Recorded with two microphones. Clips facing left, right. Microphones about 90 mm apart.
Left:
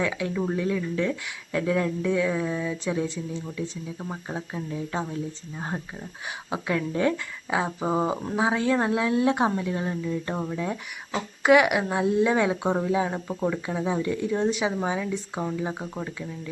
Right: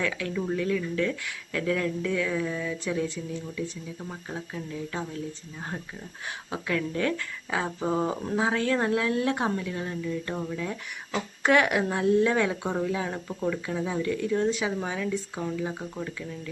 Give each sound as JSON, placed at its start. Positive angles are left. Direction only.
{"t": 0.0, "sound": "speech", "side_deg": 20}
{"t": 11.4, "sound": "speech", "side_deg": 10}